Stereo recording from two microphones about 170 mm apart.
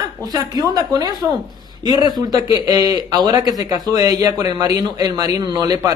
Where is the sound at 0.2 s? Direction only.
20° right (ahead or behind).